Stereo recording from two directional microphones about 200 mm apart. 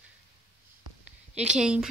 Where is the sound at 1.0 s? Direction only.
5° right (ahead or behind).